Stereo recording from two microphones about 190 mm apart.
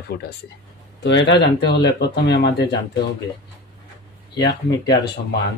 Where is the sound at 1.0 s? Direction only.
70° left (ahead or behind).